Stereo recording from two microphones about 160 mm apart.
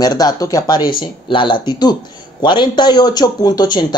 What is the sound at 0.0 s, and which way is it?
A woman's voice, 25° left (ahead or behind).